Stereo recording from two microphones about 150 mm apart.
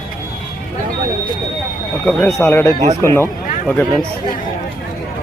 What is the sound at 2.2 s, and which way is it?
Speech, 15° left (ahead or behind).